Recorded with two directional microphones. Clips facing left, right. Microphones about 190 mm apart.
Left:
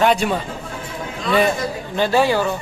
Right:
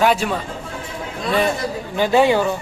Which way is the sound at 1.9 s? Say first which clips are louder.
Right 2 dB; 15° right (ahead or behind).